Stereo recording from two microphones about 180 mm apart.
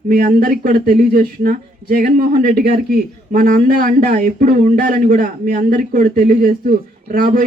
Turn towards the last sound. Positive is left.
turn(degrees=-50)  # may be behind; listen again after turning